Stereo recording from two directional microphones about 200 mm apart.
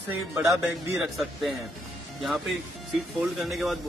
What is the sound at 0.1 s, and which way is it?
Speech, 10° right (ahead or behind).